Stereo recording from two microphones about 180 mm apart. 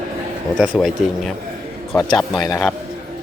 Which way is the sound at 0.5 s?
Centre (ahead or behind).